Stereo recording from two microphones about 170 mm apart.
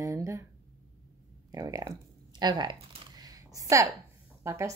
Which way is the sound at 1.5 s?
20° right (ahead or behind).